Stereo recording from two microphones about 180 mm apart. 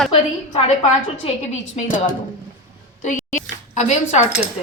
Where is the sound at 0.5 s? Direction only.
35° left (ahead or behind).